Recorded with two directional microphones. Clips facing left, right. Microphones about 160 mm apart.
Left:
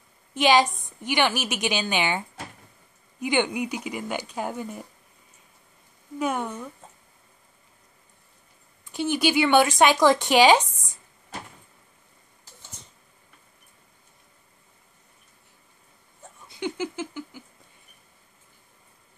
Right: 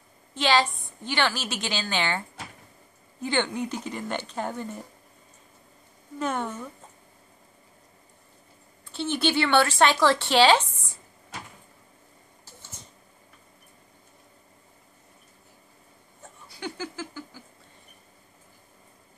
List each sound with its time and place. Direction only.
0.3 s a woman's voice: 15° left (ahead or behind)
6.1 s a woman's voice: 10° left (ahead or behind)
8.8 s a woman's voice: 10° left (ahead or behind)
16.4 s a sound: 20° left (ahead or behind)